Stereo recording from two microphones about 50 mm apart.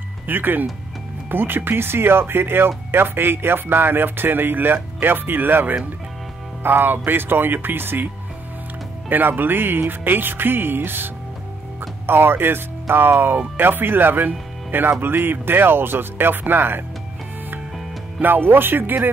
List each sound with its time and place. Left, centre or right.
0.3 s speech: right
9.1 s speech: right
12.1 s speech: right
18.2 s speech: right